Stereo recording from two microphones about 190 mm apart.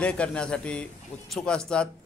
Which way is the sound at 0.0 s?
5° left (ahead or behind).